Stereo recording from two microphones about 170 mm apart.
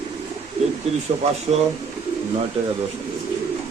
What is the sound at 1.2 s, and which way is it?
Speech, 40° right (ahead or behind).